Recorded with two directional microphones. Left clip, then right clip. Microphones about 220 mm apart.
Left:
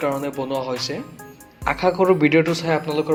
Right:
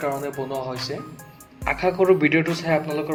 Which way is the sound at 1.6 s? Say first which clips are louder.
Left 2 dB; 15° left (ahead or behind).